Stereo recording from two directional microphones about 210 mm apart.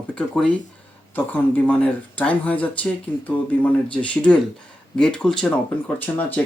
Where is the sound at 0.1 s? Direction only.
5° left (ahead or behind).